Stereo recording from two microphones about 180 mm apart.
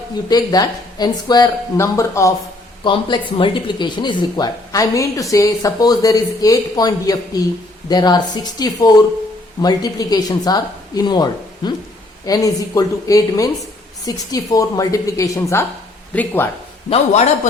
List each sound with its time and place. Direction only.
0.3 s speech: 20° left (ahead or behind)
2.8 s speech: 25° left (ahead or behind); by 16.5 s 10° left (ahead or behind)
16.9 s a man's voice: 40° left (ahead or behind)